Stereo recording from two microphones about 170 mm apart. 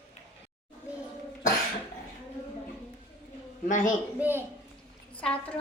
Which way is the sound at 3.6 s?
50° left (ahead or behind).